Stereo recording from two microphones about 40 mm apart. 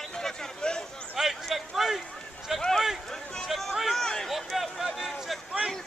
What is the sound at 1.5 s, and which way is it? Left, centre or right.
Speech, centre.